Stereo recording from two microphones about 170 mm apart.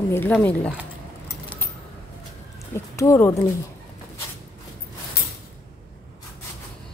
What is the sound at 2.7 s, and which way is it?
Speech, 15° left (ahead or behind).